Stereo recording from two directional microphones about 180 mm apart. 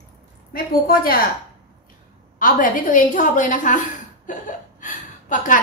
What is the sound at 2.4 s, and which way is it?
A woman's voice, 50° left (ahead or behind).